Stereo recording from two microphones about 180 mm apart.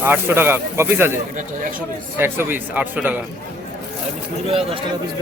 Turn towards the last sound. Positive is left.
turn(degrees=-30)  # may be behind; listen again after turning